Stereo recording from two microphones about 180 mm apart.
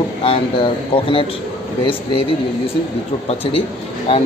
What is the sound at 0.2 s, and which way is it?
Speech, 30° left (ahead or behind).